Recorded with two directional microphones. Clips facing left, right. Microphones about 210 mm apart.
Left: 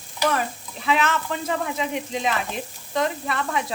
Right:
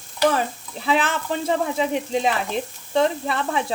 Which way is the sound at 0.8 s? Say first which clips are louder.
Right 1 dB; 35° right (ahead or behind).